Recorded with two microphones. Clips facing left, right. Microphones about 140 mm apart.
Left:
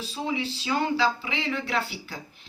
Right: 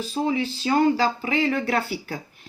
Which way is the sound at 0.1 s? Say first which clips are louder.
Right 5 dB; 45° right (ahead or behind).